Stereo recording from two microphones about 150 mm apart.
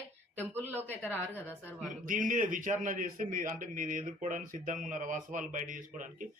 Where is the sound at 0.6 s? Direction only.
15° right (ahead or behind).